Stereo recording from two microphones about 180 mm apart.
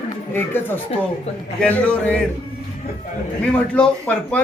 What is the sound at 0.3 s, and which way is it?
Speech, 10° left (ahead or behind).